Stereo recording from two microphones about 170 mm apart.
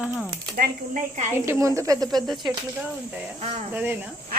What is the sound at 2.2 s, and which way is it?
Speech, centre (ahead or behind).